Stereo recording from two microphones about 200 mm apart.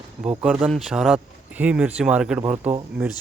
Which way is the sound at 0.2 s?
5° right (ahead or behind).